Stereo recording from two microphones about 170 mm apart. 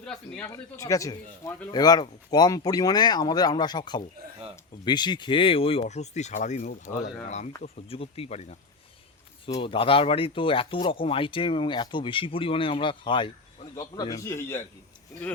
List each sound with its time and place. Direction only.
0.0 s speech: 5° left (ahead or behind)
0.4 s speech: 20° left (ahead or behind)